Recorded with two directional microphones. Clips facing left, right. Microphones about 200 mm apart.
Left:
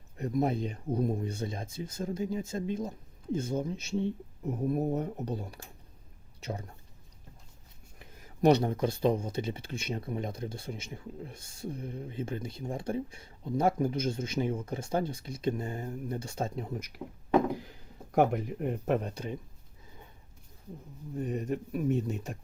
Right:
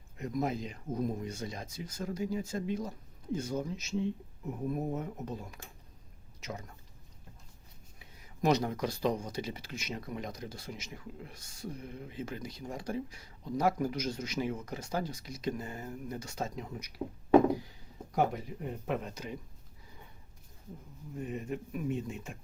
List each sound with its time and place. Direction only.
0.2 s speech: 35° left (ahead or behind)
7.9 s a sound: 50° left (ahead or behind)
8.4 s speech: 30° left (ahead or behind)
17.6 s a sound: 55° left (ahead or behind)
19.0 s speech: 30° left (ahead or behind)
21.2 s speech: 40° left (ahead or behind)